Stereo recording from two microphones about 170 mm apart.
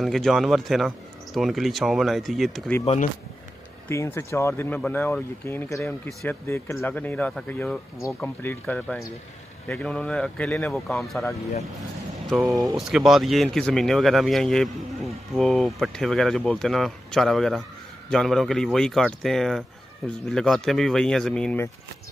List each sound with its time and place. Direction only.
0.0 s speech: centre (ahead or behind)
2.8 s speech: 40° left (ahead or behind)
3.9 s speech: 15° left (ahead or behind); by 11.2 s centre (ahead or behind)
12.4 s speech: 20° right (ahead or behind)
12.7 s speech: centre (ahead or behind)